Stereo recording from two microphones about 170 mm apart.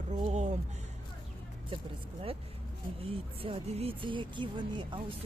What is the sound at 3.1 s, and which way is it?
Speech, 35° right (ahead or behind).